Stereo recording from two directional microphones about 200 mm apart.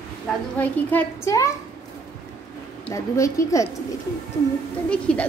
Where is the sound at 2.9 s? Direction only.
15° left (ahead or behind).